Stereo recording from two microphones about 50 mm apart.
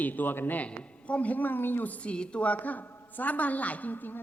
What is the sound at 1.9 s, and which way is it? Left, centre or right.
A woman's voice, left.